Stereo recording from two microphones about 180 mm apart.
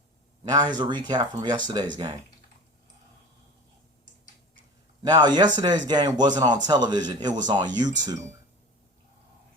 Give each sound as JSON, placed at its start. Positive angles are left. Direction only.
{"t": 0.4, "sound": "speech", "side_deg": -25}
{"t": 5.0, "sound": "speech", "side_deg": -25}